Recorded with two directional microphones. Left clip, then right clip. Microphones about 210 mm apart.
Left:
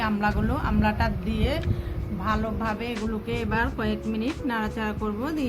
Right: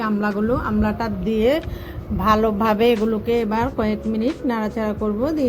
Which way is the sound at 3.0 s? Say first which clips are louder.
Right 9 dB; 30° right (ahead or behind).